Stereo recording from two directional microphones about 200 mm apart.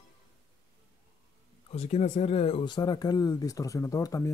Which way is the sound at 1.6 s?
30° left (ahead or behind).